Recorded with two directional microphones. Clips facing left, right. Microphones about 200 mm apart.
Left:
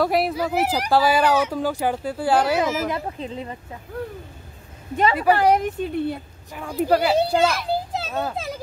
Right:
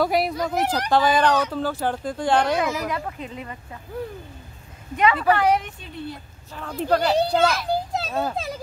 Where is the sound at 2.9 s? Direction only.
30° left (ahead or behind).